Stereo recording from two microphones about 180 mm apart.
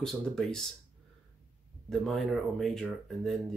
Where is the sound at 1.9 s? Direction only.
Centre (ahead or behind).